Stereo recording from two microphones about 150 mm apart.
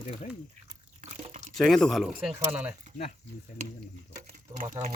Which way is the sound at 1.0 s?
45° right (ahead or behind).